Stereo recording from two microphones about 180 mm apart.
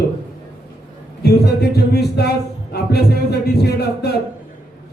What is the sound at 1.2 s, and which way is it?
A man's voice, 60° left (ahead or behind).